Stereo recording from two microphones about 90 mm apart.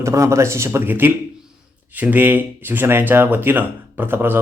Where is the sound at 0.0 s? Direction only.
35° right (ahead or behind).